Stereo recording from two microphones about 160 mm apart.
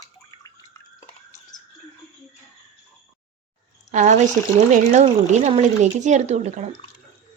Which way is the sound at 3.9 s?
50° right (ahead or behind).